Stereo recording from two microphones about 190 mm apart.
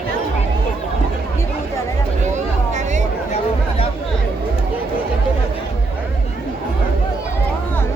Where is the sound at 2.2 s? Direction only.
40° right (ahead or behind).